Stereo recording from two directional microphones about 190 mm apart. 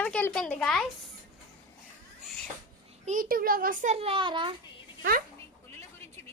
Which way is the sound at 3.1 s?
45° right (ahead or behind).